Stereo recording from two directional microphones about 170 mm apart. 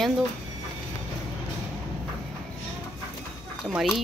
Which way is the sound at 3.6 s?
Centre (ahead or behind).